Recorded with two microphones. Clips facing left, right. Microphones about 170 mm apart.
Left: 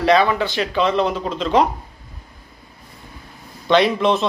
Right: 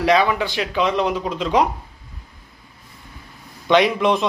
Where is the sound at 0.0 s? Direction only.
10° right (ahead or behind).